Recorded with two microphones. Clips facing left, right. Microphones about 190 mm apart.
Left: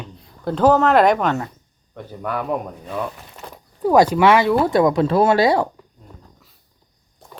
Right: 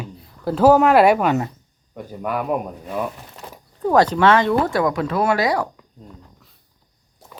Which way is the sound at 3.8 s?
10° left (ahead or behind).